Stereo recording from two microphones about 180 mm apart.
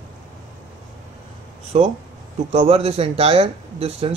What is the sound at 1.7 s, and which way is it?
Speech, 35° right (ahead or behind).